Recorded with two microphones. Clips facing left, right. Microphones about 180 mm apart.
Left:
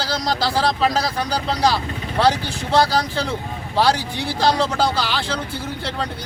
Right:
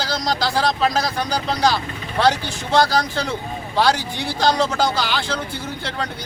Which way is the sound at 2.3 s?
30° left (ahead or behind).